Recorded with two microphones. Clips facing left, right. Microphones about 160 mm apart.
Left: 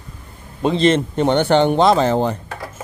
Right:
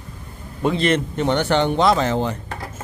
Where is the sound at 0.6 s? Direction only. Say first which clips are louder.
Left 4 dB; 20° left (ahead or behind).